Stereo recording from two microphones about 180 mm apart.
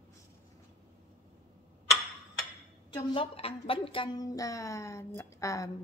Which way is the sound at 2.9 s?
30° left (ahead or behind).